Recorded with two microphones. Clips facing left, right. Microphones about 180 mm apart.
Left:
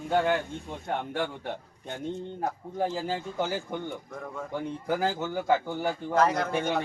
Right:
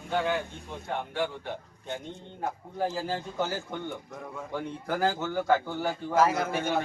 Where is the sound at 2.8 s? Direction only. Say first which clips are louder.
Left 1 dB; 15° left (ahead or behind).